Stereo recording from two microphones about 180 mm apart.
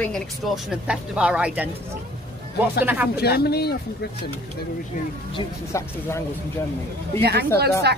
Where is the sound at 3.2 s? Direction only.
60° left (ahead or behind).